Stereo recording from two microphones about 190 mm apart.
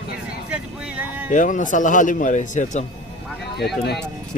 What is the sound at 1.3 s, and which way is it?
Speech, 45° left (ahead or behind).